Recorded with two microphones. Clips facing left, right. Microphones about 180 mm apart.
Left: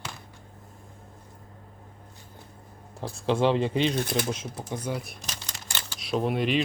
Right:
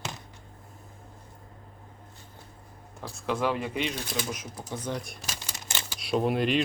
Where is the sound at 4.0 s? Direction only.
55° left (ahead or behind).